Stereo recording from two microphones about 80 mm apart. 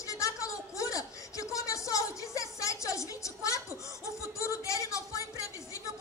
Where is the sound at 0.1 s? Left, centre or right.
Left.